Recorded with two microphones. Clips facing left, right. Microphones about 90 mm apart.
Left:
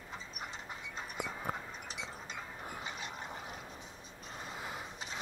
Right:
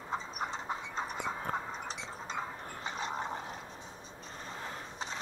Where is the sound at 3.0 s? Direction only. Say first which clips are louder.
Right 8 dB; 35° right (ahead or behind).